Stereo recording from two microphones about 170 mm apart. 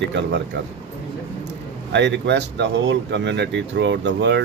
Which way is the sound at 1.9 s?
90° right.